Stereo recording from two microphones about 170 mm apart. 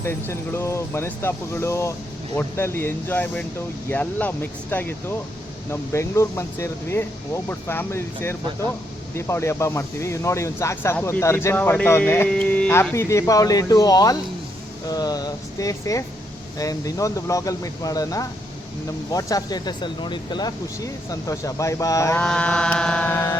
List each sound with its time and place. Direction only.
0.0 s speech: 15° left (ahead or behind)
22.2 s speech: 5° left (ahead or behind)